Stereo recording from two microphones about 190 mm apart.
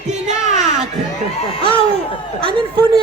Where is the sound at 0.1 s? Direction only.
40° right (ahead or behind).